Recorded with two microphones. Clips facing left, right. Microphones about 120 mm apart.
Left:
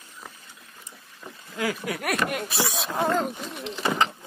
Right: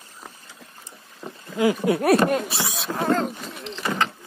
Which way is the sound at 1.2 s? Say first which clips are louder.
Right 8 dB; 25° right (ahead or behind).